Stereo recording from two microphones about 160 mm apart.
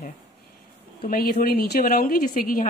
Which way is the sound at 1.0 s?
65° left (ahead or behind).